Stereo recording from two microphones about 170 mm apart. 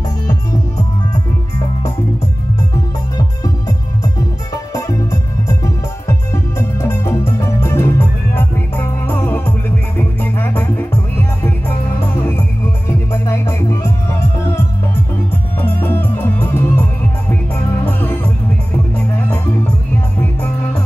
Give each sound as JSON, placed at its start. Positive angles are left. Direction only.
{"t": 3.2, "sound": "music", "side_deg": 20}
{"t": 12.2, "sound": "music", "side_deg": 15}
{"t": 15.6, "sound": "music", "side_deg": 15}
{"t": 17.8, "sound": "music", "side_deg": 10}